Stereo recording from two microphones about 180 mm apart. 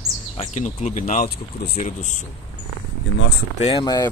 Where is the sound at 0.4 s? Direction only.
40° left (ahead or behind).